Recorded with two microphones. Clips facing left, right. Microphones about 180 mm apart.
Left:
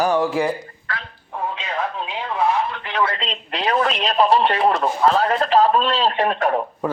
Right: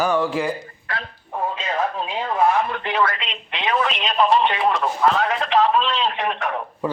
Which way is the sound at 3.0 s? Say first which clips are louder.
Even; 30° left (ahead or behind).